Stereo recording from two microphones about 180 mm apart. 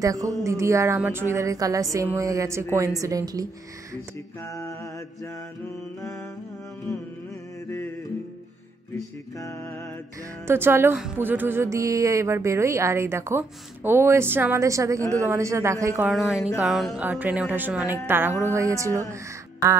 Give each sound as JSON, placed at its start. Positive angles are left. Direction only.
{"t": 0.0, "sound": "a woman's voice", "side_deg": -20}
{"t": 4.4, "sound": "mantra", "side_deg": 15}
{"t": 9.4, "sound": "mantra", "side_deg": 15}
{"t": 10.4, "sound": "a woman's voice", "side_deg": -15}
{"t": 16.1, "sound": "a woman's voice", "side_deg": 0}